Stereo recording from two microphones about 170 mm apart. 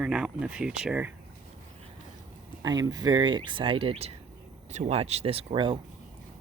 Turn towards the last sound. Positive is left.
turn(degrees=-30)  # may be behind; listen again after turning